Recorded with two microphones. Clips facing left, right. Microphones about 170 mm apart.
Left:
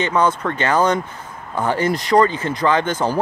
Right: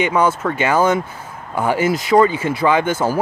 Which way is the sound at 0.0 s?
10° right (ahead or behind).